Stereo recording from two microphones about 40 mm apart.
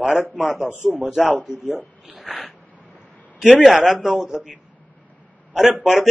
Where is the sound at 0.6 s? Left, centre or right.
Left.